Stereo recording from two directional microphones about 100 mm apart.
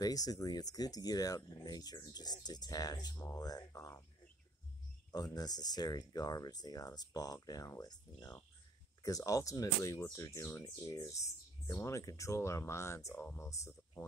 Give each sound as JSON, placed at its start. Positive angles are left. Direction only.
{"t": 0.0, "sound": "speech", "side_deg": 40}
{"t": 5.1, "sound": "speech", "side_deg": 40}